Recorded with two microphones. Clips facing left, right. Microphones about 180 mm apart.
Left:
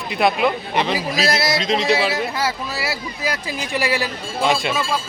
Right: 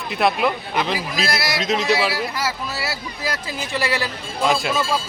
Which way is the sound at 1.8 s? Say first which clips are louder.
Even; 30° left (ahead or behind).